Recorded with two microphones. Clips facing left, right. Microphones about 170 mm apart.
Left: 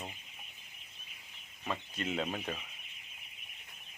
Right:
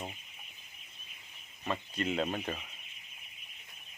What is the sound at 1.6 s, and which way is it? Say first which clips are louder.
Speech: right 3 dB; centre (ahead or behind).